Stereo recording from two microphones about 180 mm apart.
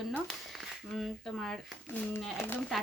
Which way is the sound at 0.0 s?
Centre (ahead or behind).